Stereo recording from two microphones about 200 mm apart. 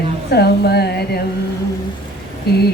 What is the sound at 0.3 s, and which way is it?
Music, 55° left (ahead or behind).